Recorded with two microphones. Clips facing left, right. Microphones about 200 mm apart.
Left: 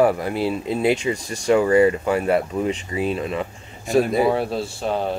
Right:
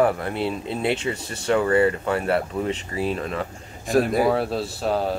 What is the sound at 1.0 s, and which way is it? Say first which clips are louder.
Speech: left 4 dB; 15° left (ahead or behind).